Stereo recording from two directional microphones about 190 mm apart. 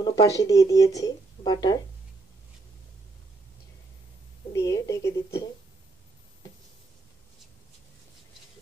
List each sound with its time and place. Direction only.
0.0 s speech: 15° left (ahead or behind)
4.5 s a woman's voice: 15° left (ahead or behind)